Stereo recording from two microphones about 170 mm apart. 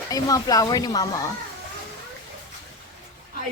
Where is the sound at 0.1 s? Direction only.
20° left (ahead or behind).